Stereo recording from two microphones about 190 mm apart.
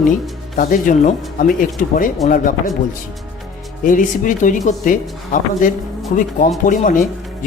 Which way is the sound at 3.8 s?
45° left (ahead or behind).